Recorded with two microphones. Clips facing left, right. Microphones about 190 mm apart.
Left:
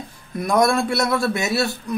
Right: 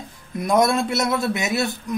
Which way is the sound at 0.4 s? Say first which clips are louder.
Even; 20° right (ahead or behind).